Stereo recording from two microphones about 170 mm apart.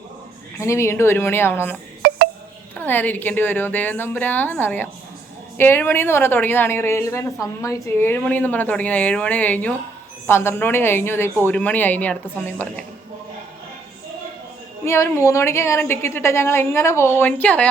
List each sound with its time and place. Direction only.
0.6 s a woman's voice: 15° left (ahead or behind)
2.0 s music: 70° right (ahead or behind)
2.7 s a woman's voice: 10° left (ahead or behind)
14.8 s a woman's voice: 15° left (ahead or behind)